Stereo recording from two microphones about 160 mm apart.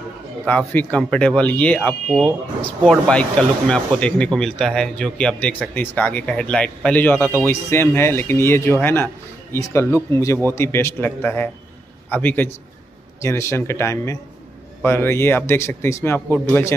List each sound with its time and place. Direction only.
0.5 s speech: 10° left (ahead or behind)